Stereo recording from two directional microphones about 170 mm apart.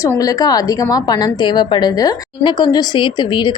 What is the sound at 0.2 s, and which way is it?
A woman's voice, 20° left (ahead or behind).